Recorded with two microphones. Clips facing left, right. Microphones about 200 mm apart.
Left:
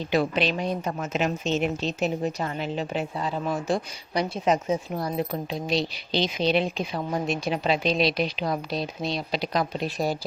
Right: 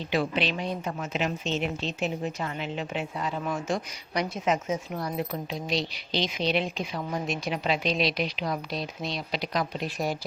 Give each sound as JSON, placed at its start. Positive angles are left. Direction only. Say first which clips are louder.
{"t": 0.1, "sound": "a woman's voice", "louder": "left 3 dB", "side_deg": 45}